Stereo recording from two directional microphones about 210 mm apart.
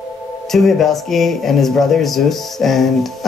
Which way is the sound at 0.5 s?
Centre (ahead or behind).